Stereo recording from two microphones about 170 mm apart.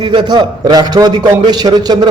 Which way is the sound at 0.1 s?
25° right (ahead or behind).